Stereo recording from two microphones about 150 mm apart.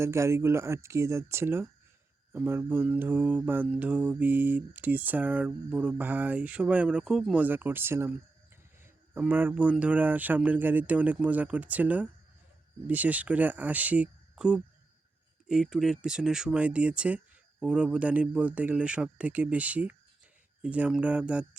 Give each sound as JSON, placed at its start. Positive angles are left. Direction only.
{"t": 0.0, "sound": "mantra", "side_deg": -20}
{"t": 15.4, "sound": "speech", "side_deg": -5}
{"t": 17.6, "sound": "mantra", "side_deg": -5}